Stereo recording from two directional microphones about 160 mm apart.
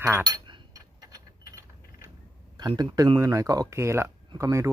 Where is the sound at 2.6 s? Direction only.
25° right (ahead or behind).